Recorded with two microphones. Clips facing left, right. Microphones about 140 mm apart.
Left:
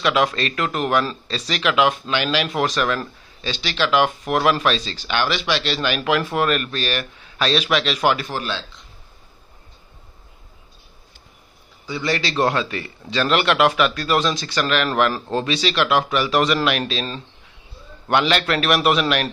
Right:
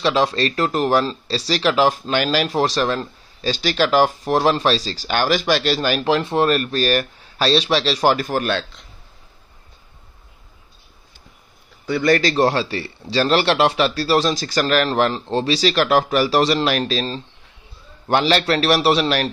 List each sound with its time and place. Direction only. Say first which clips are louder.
0.0 s speech: right 2 dB; 30° right (ahead or behind); by 8.8 s 60° right (ahead or behind)
11.8 s speech: right 7 dB; 55° right (ahead or behind); by 19.3 s 35° right (ahead or behind)